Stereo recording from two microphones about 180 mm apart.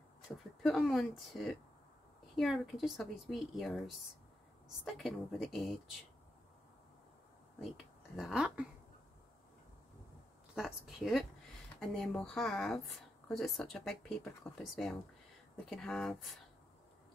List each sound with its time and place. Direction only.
0.6 s speech: centre (ahead or behind)
8.2 s speech: 5° right (ahead or behind)
10.5 s speech: 5° right (ahead or behind)